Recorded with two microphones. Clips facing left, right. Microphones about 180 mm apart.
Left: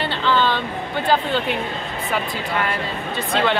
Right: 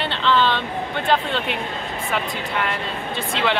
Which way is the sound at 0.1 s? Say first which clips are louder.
Right 1 dB; centre (ahead or behind).